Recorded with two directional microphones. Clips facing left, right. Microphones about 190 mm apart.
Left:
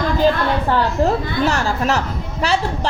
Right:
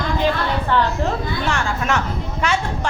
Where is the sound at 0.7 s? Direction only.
40° left (ahead or behind).